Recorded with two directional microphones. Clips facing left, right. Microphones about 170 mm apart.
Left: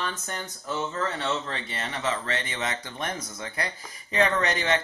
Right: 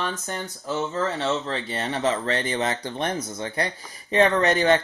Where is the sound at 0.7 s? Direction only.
25° right (ahead or behind).